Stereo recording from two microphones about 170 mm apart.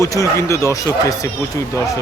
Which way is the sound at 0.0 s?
20° left (ahead or behind).